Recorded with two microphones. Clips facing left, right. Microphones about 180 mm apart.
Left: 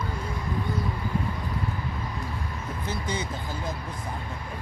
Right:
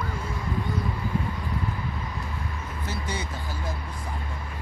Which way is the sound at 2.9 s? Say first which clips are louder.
Left 2 dB; 20° left (ahead or behind).